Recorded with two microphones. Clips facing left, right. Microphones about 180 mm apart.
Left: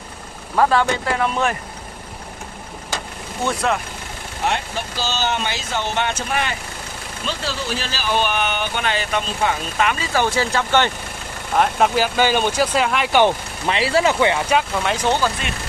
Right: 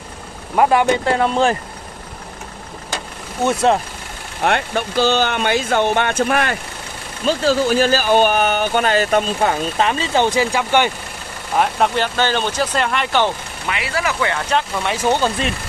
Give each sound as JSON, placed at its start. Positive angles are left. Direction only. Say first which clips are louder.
{"t": 0.6, "sound": "speech", "louder": "right 3 dB", "side_deg": -15}
{"t": 1.0, "sound": "speech", "louder": "right 4 dB", "side_deg": -30}
{"t": 3.4, "sound": "speech", "louder": "right 6 dB", "side_deg": -30}
{"t": 4.5, "sound": "speech", "louder": "right 5 dB", "side_deg": -60}
{"t": 11.5, "sound": "speech", "louder": "even", "side_deg": 0}
{"t": 13.7, "sound": "speech", "louder": "left 5 dB", "side_deg": 30}
{"t": 14.3, "sound": "speech", "louder": "left 1 dB", "side_deg": 5}
{"t": 15.0, "sound": "speech", "louder": "right 3 dB", "side_deg": -20}